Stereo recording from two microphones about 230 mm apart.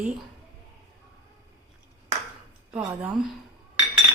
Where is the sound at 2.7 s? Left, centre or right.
Centre.